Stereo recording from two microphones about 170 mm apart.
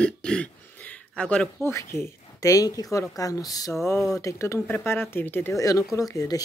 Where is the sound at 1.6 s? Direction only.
15° left (ahead or behind).